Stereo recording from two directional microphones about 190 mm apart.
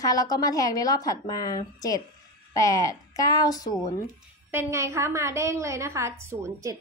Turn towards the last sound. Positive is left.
turn(degrees=-15)  # may be behind; listen again after turning